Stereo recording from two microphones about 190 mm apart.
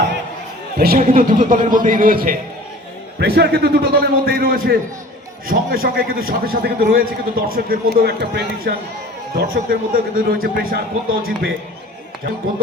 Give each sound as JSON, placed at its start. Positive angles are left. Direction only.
{"t": 0.8, "sound": "a man's voice", "side_deg": -50}
{"t": 3.2, "sound": "a man's voice", "side_deg": -60}